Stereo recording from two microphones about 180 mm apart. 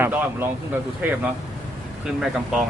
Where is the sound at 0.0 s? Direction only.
10° right (ahead or behind).